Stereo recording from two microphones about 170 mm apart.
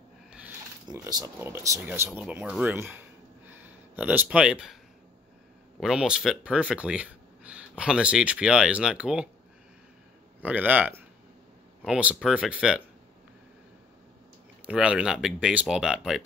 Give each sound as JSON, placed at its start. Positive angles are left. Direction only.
{"t": 0.8, "sound": "speech", "side_deg": -20}
{"t": 3.4, "sound": "a sound", "side_deg": -10}
{"t": 5.8, "sound": "speech", "side_deg": -5}
{"t": 10.4, "sound": "speech", "side_deg": -10}
{"t": 14.7, "sound": "speech", "side_deg": -5}